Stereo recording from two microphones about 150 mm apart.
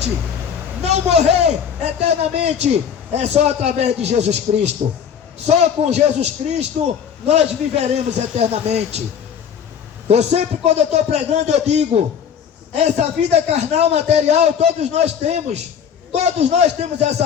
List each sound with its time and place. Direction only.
0.8 s a man's voice: 45° right (ahead or behind)
10.1 s a man's voice: 45° right (ahead or behind)